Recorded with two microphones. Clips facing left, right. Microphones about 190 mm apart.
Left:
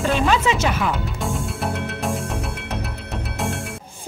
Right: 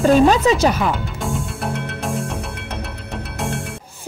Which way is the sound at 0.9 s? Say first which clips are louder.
Right 1 dB; centre (ahead or behind).